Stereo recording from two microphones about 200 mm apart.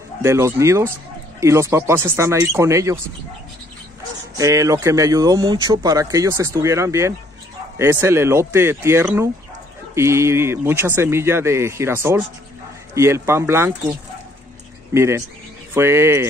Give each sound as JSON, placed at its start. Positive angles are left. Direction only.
{"t": 0.2, "sound": "speech", "side_deg": -15}
{"t": 4.4, "sound": "speech", "side_deg": -15}
{"t": 15.0, "sound": "speech", "side_deg": -15}